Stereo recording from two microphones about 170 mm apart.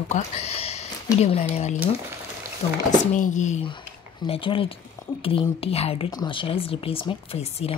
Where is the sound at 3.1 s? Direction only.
45° left (ahead or behind).